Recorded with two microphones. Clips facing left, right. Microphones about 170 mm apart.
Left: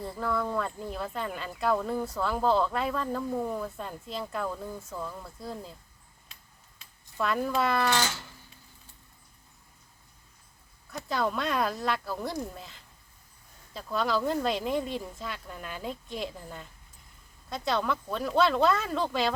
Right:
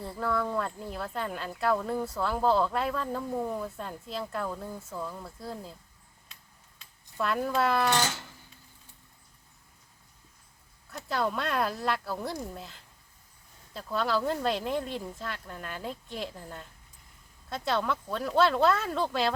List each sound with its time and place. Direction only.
0.0 s speech: centre (ahead or behind)
7.2 s speech: centre (ahead or behind)
10.9 s speech: centre (ahead or behind)